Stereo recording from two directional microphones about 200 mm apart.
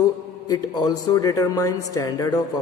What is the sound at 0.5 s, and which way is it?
A man's voice, 20° left (ahead or behind).